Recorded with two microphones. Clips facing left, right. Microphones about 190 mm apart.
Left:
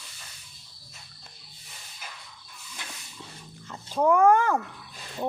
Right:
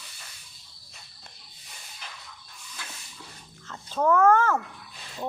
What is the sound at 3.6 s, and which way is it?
Wail, 15° left (ahead or behind).